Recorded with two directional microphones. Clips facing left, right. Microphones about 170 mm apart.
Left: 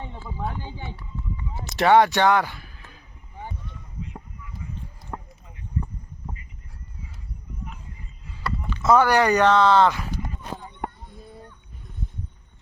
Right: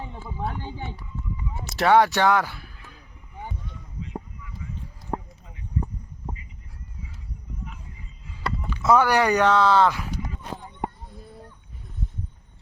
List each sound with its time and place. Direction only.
1.6 s speech: centre (ahead or behind)
5.1 s a sound: 20° right (ahead or behind)
8.7 s speech: 10° right (ahead or behind)